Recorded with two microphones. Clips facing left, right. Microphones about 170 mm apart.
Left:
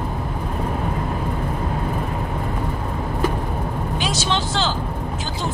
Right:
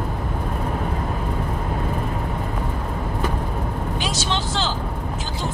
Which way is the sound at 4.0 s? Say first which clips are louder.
Left 3 dB; 75° left (ahead or behind).